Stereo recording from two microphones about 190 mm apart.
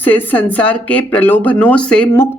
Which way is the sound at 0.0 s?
10° left (ahead or behind).